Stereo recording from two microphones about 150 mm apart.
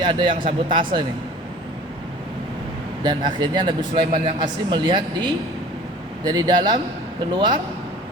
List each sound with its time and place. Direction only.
0.0 s speech: 30° right (ahead or behind)
3.0 s a man's voice: 30° right (ahead or behind)